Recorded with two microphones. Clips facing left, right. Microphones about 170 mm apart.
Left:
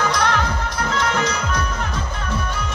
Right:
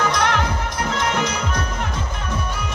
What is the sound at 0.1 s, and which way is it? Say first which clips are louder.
Music: even; 20° right (ahead or behind).